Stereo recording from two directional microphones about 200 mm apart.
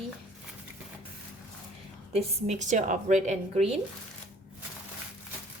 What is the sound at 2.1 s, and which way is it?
A woman's voice, 35° right (ahead or behind).